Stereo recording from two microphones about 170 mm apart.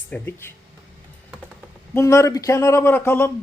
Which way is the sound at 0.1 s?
15° left (ahead or behind).